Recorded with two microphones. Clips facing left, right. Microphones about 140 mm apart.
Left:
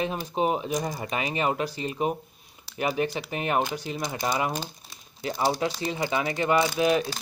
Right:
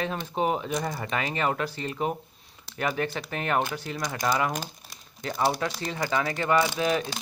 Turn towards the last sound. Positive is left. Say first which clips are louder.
# left 2 dB
turn(degrees=15)  # may be behind; listen again after turning